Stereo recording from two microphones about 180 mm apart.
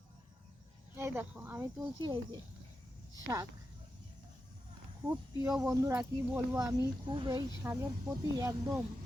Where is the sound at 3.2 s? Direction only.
20° right (ahead or behind).